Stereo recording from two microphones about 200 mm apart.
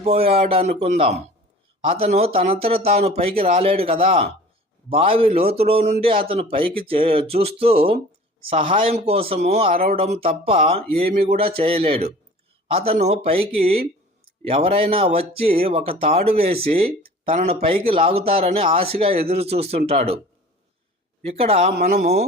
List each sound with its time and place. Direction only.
0.0 s a man's voice: 30° right (ahead or behind)
10.9 s speech: 50° right (ahead or behind)
11.3 s a man's voice: 30° right (ahead or behind)
16.4 s speech: 50° right (ahead or behind)
17.2 s a man's voice: 30° right (ahead or behind)
21.2 s a man's voice: 30° right (ahead or behind)
21.7 s speech: 50° right (ahead or behind)